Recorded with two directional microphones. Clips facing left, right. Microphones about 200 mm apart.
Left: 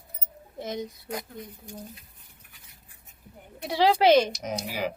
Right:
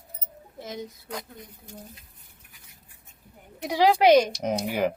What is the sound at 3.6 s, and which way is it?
Speech, 15° right (ahead or behind).